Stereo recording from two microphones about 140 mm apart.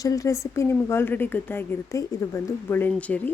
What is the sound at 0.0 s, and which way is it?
Speech, 25° left (ahead or behind).